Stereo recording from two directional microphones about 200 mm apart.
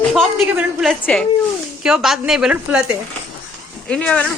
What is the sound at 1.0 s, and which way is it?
A woman's voice, 5° left (ahead or behind).